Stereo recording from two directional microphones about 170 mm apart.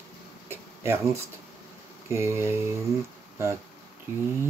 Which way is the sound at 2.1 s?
15° right (ahead or behind).